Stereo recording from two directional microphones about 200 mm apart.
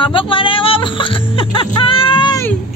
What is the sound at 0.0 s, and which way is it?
Music, 25° left (ahead or behind).